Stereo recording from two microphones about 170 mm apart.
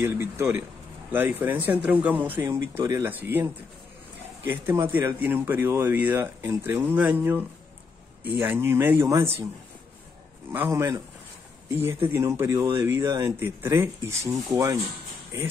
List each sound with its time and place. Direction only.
0.0 s speech: 15° right (ahead or behind)
10.5 s speech: 15° right (ahead or behind)
12.1 s speech: 15° right (ahead or behind)
13.0 s speech: 25° right (ahead or behind)
13.4 s speech: 15° right (ahead or behind)